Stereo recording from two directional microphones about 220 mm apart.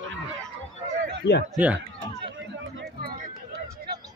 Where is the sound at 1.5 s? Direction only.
5° right (ahead or behind).